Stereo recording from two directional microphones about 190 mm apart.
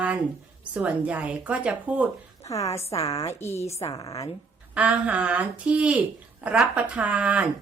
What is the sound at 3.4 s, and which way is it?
Speech, 15° left (ahead or behind).